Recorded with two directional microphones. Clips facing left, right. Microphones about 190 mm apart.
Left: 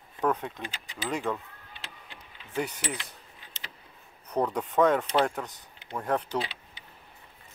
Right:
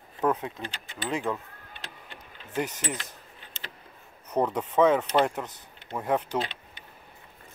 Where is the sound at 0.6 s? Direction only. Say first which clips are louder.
Right 1 dB; 5° left (ahead or behind).